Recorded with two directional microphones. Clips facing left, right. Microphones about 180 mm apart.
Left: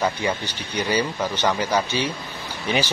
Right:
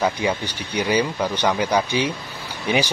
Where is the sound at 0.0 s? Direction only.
10° right (ahead or behind).